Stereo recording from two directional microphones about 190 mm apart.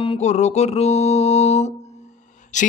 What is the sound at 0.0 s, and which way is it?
Mantra, 35° left (ahead or behind).